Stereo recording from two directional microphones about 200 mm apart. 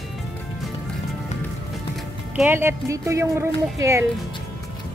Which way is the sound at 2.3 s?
10° right (ahead or behind).